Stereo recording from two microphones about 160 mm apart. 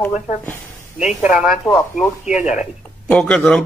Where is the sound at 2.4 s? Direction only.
50° left (ahead or behind).